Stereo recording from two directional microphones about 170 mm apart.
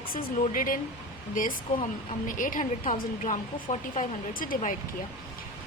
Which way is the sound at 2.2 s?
50° left (ahead or behind).